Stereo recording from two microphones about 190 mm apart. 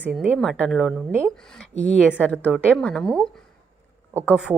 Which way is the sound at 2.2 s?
10° left (ahead or behind).